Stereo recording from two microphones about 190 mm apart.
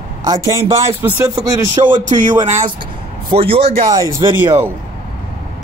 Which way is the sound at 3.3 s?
30° right (ahead or behind).